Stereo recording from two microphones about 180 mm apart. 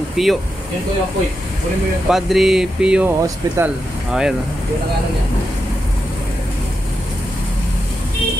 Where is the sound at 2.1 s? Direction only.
Centre (ahead or behind).